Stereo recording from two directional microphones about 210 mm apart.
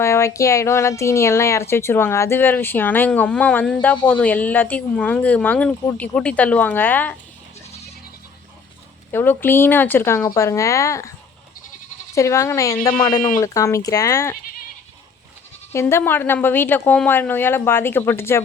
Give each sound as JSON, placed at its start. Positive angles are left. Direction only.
{"t": 0.0, "sound": "a woman's voice", "side_deg": 15}
{"t": 9.1, "sound": "a woman's voice", "side_deg": 10}
{"t": 12.1, "sound": "a woman's voice", "side_deg": 15}
{"t": 13.1, "sound": "speech", "side_deg": 40}
{"t": 13.4, "sound": "a woman's voice", "side_deg": 15}
{"t": 15.7, "sound": "a woman's voice", "side_deg": 10}